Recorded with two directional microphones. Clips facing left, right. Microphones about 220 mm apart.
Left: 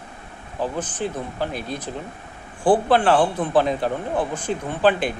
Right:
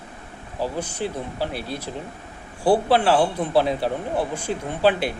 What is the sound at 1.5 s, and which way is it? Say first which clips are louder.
Speech: left 1 dB; 20° left (ahead or behind).